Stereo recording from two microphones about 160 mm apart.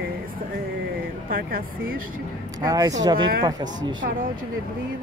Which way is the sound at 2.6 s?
25° right (ahead or behind).